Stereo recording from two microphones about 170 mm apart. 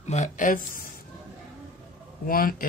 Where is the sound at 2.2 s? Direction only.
60° left (ahead or behind).